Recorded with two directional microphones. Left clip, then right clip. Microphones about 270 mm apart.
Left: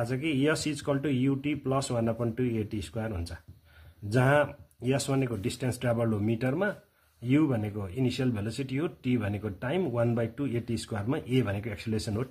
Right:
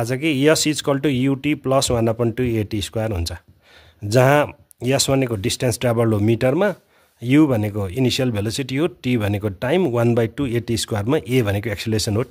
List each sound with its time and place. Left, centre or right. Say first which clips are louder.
0.0 s speech: right 10 dB; right